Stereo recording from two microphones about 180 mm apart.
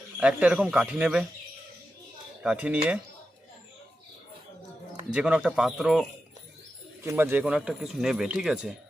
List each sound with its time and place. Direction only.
0.2 s speech: 5° right (ahead or behind)
2.4 s cutlery: 5° right (ahead or behind)
5.1 s speech: 5° right (ahead or behind)
7.0 s speech: 15° right (ahead or behind)